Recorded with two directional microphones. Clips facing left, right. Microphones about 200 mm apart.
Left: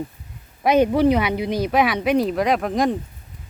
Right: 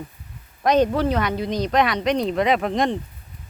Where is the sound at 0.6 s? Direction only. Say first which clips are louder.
Left 2 dB; 10° left (ahead or behind).